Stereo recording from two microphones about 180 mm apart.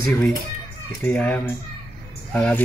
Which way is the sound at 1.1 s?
10° left (ahead or behind).